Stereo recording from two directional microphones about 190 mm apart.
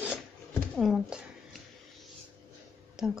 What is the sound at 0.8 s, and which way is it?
Speech, 5° right (ahead or behind).